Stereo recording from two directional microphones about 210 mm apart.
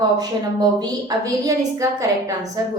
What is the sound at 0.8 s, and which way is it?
A woman's voice, 15° right (ahead or behind).